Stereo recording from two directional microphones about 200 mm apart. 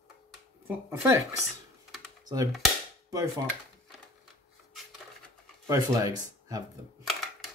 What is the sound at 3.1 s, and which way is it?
Speech, 15° right (ahead or behind).